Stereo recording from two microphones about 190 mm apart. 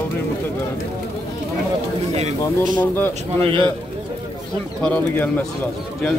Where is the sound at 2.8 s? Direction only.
10° left (ahead or behind).